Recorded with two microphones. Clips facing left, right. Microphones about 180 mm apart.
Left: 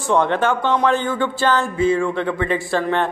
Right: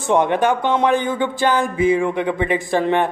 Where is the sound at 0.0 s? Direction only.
15° right (ahead or behind).